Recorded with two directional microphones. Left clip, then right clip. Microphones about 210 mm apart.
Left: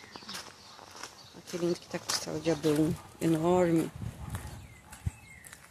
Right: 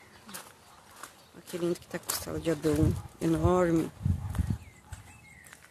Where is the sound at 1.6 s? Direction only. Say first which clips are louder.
Even; 5° right (ahead or behind).